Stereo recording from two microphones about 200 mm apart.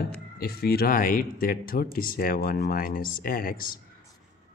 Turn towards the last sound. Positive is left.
turn(degrees=45)  # may be behind; listen again after turning